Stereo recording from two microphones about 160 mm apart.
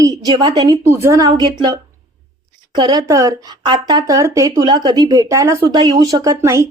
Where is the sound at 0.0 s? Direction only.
25° right (ahead or behind).